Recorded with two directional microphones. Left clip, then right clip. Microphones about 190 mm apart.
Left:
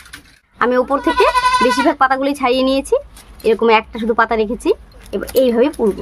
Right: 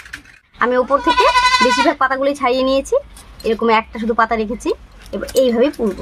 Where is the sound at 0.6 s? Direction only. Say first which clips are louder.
Even; 40° left (ahead or behind).